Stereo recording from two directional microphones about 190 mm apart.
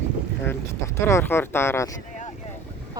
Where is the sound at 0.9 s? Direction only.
15° left (ahead or behind).